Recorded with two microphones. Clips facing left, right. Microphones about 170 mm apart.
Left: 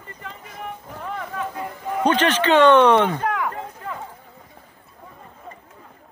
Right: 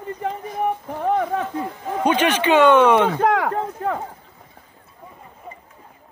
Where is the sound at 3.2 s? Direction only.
90° right; by 4.0 s 70° right (ahead or behind).